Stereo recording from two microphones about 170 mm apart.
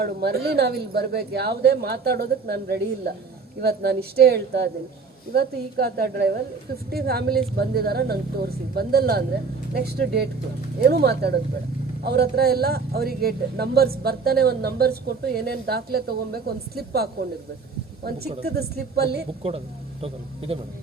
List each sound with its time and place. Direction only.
0.0 s a man's voice: 65° right (ahead or behind)
18.4 s speech: 65° right (ahead or behind)
19.4 s speech: 35° right (ahead or behind)